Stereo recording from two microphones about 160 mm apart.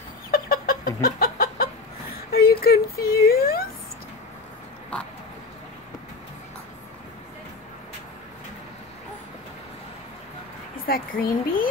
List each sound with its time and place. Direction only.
0.3 s chicken: 70° left (ahead or behind)
2.3 s speech: 75° left (ahead or behind)
10.9 s speech: 65° left (ahead or behind)